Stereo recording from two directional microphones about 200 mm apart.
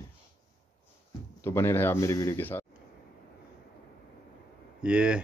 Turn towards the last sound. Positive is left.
turn(degrees=-5)  # may be behind; listen again after turning